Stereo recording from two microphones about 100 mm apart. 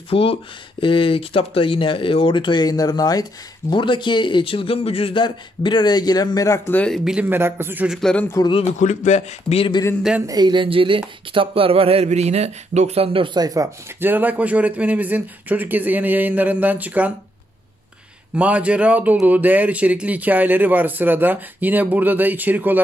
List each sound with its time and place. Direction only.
0.1 s speech: 65° left (ahead or behind); by 3.3 s 40° left (ahead or behind)
3.7 s speech: 55° left (ahead or behind); by 6.7 s 30° left (ahead or behind)
6.7 s speech: 10° left (ahead or behind)
7.2 s a man's voice: 25° right (ahead or behind)
7.9 s a man's voice: 5° left (ahead or behind)
9.1 s speech: 90° left
10.2 s speech: 45° right (ahead or behind); by 13.4 s 60° right (ahead or behind)
13.4 s speech: 40° right (ahead or behind)
13.9 s speech: 20° right (ahead or behind)
18.3 s speech: 15° right (ahead or behind)